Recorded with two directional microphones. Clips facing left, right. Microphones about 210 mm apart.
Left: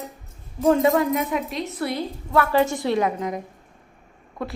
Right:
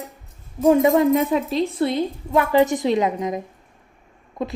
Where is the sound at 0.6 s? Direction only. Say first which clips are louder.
Right 3 dB; 15° right (ahead or behind).